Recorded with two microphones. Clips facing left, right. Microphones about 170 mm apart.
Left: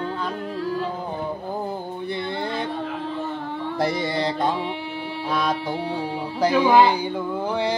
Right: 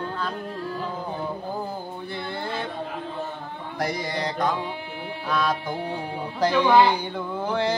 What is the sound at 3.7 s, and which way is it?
Mantra, 25° left (ahead or behind).